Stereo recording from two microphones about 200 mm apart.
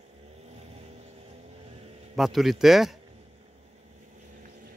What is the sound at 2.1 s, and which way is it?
Speech, centre (ahead or behind).